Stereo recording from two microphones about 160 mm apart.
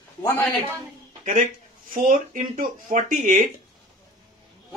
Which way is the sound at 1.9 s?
55° right (ahead or behind).